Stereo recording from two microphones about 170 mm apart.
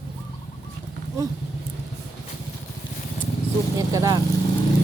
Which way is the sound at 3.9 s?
20° right (ahead or behind).